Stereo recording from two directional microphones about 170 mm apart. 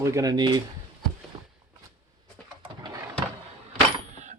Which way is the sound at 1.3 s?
25° right (ahead or behind).